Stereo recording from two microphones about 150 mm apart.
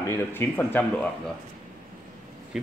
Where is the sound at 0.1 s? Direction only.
15° left (ahead or behind).